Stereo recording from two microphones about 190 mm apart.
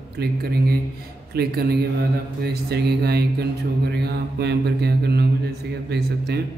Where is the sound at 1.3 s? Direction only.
55° right (ahead or behind).